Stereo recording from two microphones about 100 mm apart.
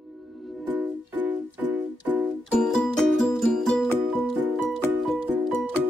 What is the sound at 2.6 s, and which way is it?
Music, 5° left (ahead or behind).